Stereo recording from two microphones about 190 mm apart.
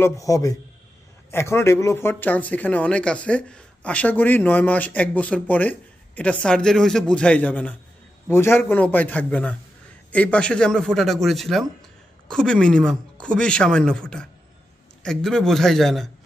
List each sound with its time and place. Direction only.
0.0 s speech: 15° left (ahead or behind)